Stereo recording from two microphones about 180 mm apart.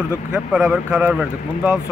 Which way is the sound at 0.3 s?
5° right (ahead or behind).